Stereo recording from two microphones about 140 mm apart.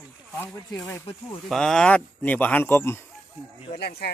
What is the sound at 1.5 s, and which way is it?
Speech, 5° left (ahead or behind).